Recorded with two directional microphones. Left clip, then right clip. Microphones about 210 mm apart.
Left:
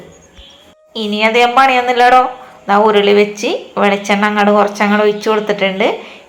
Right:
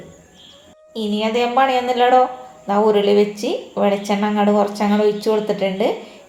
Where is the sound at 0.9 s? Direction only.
5° left (ahead or behind).